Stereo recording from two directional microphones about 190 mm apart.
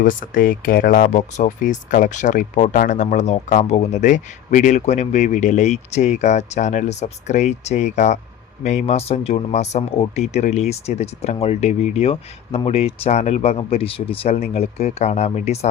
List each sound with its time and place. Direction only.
0.0 s speech: 45° left (ahead or behind)